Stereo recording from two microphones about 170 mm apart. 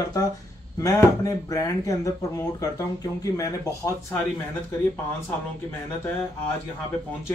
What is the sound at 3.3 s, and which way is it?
Speech, 20° left (ahead or behind).